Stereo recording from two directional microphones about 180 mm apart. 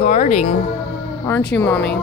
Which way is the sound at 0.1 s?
40° left (ahead or behind).